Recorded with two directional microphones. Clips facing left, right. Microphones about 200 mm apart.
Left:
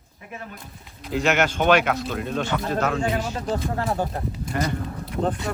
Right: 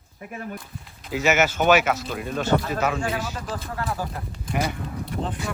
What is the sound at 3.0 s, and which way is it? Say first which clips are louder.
Speech: left 3 dB; 25° left (ahead or behind).